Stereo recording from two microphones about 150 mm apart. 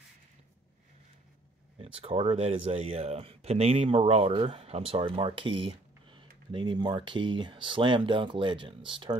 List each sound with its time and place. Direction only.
1.8 s speech: 40° right (ahead or behind)